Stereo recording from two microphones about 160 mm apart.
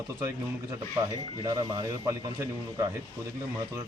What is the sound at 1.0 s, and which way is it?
A man's voice, 15° right (ahead or behind).